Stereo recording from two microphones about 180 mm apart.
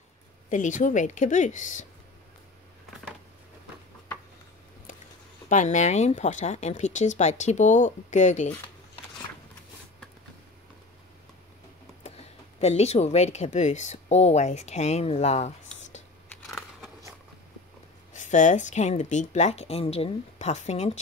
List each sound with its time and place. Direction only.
0.5 s a woman's voice: 45° left (ahead or behind)
5.5 s speech: 45° left (ahead or behind)
12.1 s a sound: 35° left (ahead or behind)
12.5 s speech: 35° left (ahead or behind)
16.4 s a sound: centre (ahead or behind)
18.1 s speech: 45° left (ahead or behind)